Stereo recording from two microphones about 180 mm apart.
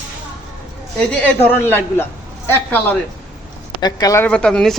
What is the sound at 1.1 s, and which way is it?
A man's voice, 10° left (ahead or behind).